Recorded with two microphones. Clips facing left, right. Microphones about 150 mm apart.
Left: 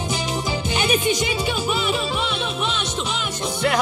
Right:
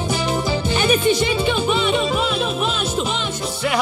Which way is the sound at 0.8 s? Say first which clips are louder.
Right 4 dB; 50° right (ahead or behind).